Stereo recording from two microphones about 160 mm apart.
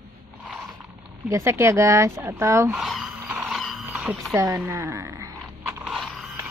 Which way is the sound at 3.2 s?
10° right (ahead or behind).